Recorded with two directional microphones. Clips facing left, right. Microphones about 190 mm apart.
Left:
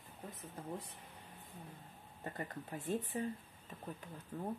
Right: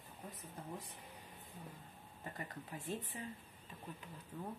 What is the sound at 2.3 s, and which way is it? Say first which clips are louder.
Speech: left 4 dB; 35° left (ahead or behind).